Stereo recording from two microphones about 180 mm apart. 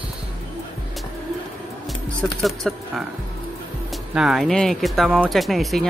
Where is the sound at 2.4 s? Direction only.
Centre (ahead or behind).